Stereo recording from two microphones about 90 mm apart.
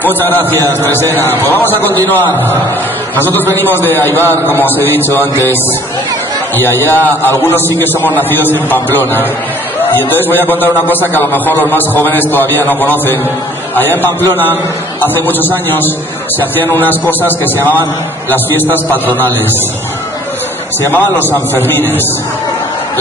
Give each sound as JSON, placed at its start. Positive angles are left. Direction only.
{"t": 0.0, "sound": "a man's voice", "side_deg": 20}
{"t": 3.8, "sound": "a man's voice", "side_deg": 25}
{"t": 20.9, "sound": "a man's voice", "side_deg": 20}